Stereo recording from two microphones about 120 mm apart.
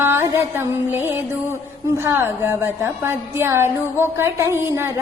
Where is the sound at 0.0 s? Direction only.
20° right (ahead or behind).